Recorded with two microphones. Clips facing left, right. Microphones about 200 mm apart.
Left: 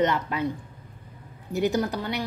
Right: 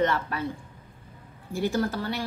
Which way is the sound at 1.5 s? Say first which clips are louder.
Left 2 dB; 20° left (ahead or behind).